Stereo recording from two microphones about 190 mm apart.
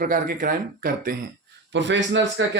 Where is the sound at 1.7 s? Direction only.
70° right (ahead or behind).